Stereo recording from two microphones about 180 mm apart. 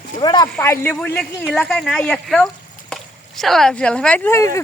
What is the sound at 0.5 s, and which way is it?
Speech, 15° left (ahead or behind).